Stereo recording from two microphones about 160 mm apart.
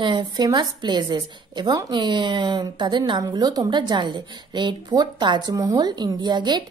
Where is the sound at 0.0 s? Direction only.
30° right (ahead or behind).